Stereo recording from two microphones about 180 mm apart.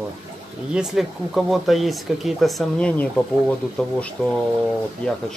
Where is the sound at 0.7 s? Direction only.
Centre (ahead or behind).